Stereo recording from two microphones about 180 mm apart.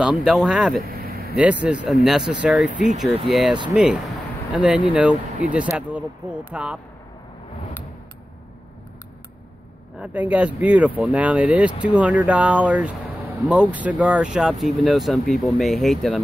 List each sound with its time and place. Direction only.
0.0 s speech: 5° right (ahead or behind)
0.8 s vehicle: 55° right (ahead or behind)
1.3 s speech: 5° right (ahead or behind)
9.9 s speech: 10° right (ahead or behind)